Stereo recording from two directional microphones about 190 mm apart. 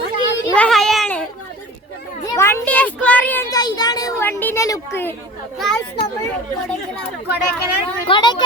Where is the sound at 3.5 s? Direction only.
20° left (ahead or behind).